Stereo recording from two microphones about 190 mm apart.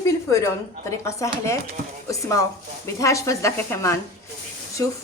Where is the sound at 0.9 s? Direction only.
15° left (ahead or behind).